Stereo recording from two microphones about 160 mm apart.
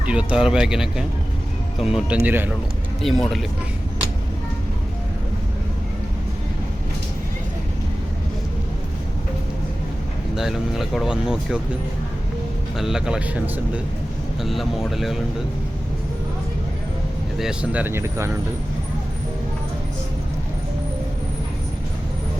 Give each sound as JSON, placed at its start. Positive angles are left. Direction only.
{"t": 0.0, "sound": "speech", "side_deg": -5}
{"t": 3.0, "sound": "speech", "side_deg": 0}
{"t": 10.3, "sound": "speech", "side_deg": 0}
{"t": 12.7, "sound": "speech", "side_deg": -5}
{"t": 14.4, "sound": "speech", "side_deg": 0}
{"t": 17.3, "sound": "speech", "side_deg": -5}